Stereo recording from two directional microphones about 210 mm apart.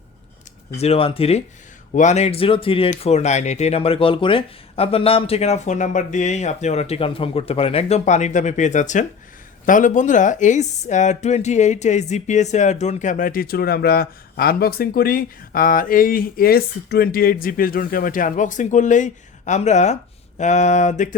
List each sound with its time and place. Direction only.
0.8 s speech: 25° left (ahead or behind)